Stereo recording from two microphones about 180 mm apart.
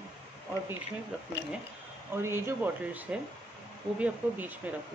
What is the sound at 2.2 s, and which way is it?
Speech, 15° right (ahead or behind).